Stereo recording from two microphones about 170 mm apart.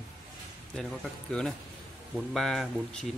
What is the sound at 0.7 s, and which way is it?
Speech, 5° left (ahead or behind).